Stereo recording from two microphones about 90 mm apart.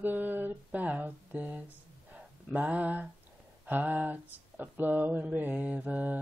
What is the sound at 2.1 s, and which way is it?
Speech, 15° right (ahead or behind).